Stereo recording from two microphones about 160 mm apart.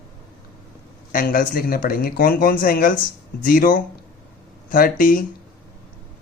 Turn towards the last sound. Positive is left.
turn(degrees=60)  # may be behind; listen again after turning